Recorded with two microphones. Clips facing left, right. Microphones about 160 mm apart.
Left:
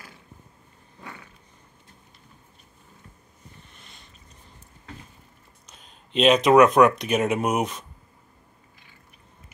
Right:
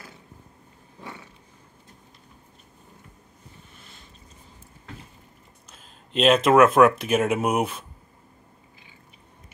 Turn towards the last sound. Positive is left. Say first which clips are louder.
# right 1 dB
turn(degrees=-5)  # may be behind; listen again after turning